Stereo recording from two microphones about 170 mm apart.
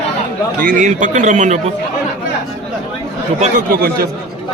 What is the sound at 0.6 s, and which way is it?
A man's voice, 50° right (ahead or behind).